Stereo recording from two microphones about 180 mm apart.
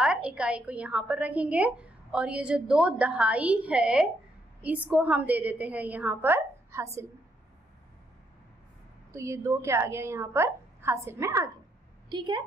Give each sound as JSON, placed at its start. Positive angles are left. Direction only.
{"t": 0.0, "sound": "a woman's voice", "side_deg": -5}
{"t": 9.1, "sound": "a woman's voice", "side_deg": -15}